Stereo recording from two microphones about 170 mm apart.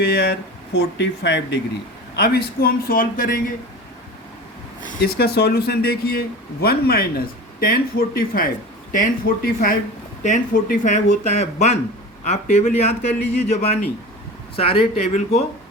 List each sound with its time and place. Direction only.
0.0 s speech: 75° left (ahead or behind); by 1.5 s 90° left
2.1 s speech: 65° left (ahead or behind)
4.9 s a man's voice: 65° left (ahead or behind); by 15.4 s 40° left (ahead or behind)